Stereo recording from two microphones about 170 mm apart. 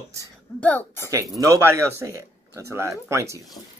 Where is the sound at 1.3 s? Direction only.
15° right (ahead or behind).